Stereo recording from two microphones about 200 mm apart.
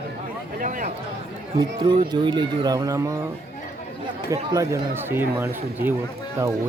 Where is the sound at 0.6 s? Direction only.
40° right (ahead or behind).